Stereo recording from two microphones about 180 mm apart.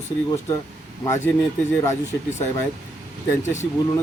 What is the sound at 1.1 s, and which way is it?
Speech, 15° left (ahead or behind).